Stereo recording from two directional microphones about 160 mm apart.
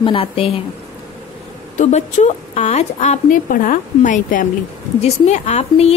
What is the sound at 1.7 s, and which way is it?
A woman's voice, 45° left (ahead or behind).